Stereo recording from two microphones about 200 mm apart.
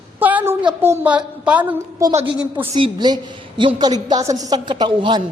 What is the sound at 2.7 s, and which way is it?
A woman's voice, 25° right (ahead or behind).